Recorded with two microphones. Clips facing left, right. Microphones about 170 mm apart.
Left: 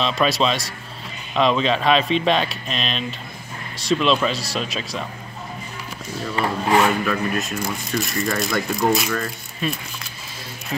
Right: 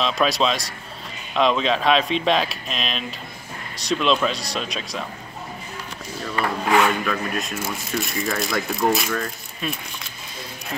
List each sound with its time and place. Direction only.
0.0 s speech: centre (ahead or behind)
6.3 s speech: 30° left (ahead or behind)
7.1 s speech: centre (ahead or behind)